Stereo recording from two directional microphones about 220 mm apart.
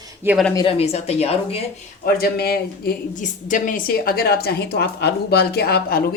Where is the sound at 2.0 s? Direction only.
45° left (ahead or behind).